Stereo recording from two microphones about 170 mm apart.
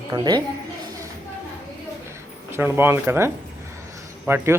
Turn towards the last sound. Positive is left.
turn(degrees=-10)  # may be behind; listen again after turning